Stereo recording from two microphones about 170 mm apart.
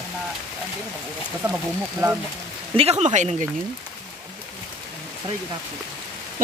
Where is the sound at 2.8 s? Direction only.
35° right (ahead or behind).